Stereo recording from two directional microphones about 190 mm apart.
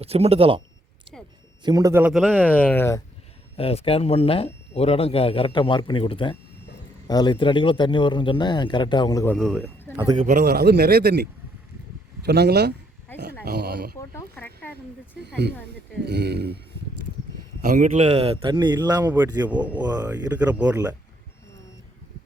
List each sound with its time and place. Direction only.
0.0 s speech: 30° right (ahead or behind)
1.6 s a man's voice: 20° right (ahead or behind); by 3.0 s 15° left (ahead or behind)
3.6 s speech: 30° left (ahead or behind)
9.3 s a man's voice: centre (ahead or behind)
10.2 s speech: 40° right (ahead or behind)
10.4 s speech: 60° right (ahead or behind)
14.1 s speech: 10° left (ahead or behind)
15.2 s speech: 65° right (ahead or behind)
17.6 s speech: 45° right (ahead or behind); by 20.1 s 20° right (ahead or behind)
20.3 s speech: 5° right (ahead or behind)
20.7 s speech: 20° right (ahead or behind)